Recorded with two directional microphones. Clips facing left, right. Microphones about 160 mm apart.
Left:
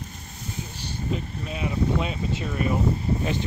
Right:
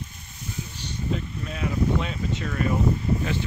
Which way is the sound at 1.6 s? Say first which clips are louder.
Even; 15° left (ahead or behind).